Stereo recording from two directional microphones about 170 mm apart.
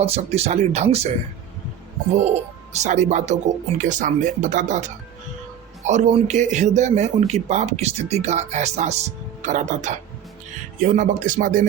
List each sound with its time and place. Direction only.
0.0 s a man's voice: 40° right (ahead or behind)
2.1 s a man's voice: 40° right (ahead or behind)